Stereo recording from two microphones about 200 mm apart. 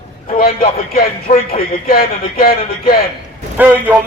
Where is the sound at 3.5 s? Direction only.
10° right (ahead or behind).